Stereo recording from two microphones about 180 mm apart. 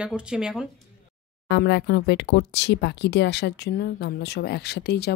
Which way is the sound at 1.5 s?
70° left (ahead or behind).